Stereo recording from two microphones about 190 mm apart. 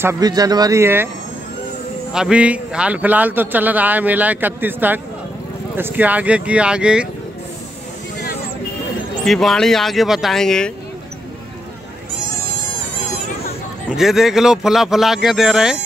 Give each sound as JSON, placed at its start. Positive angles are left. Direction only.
{"t": 0.0, "sound": "a man's voice", "side_deg": -15}
{"t": 2.1, "sound": "a man's voice", "side_deg": -5}
{"t": 9.2, "sound": "speech", "side_deg": 0}
{"t": 13.8, "sound": "speech", "side_deg": 0}